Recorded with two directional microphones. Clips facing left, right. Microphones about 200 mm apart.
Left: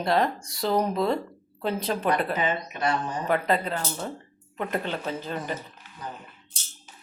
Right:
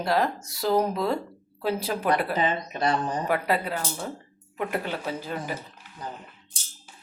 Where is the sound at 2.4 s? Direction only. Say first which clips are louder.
Right 1 dB; 35° right (ahead or behind).